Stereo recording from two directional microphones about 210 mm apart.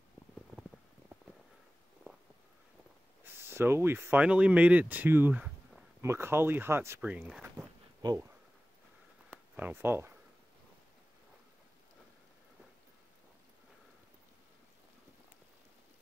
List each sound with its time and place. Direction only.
0.6 s clip-clop: centre (ahead or behind)
3.3 s speech: 10° right (ahead or behind)
8.0 s speech: 20° right (ahead or behind)
9.3 s a sound: 10° right (ahead or behind)